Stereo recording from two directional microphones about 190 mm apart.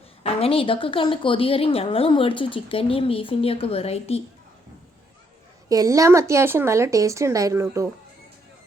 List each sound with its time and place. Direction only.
0.2 s a woman's voice: 30° left (ahead or behind)
5.6 s a woman's voice: 20° right (ahead or behind)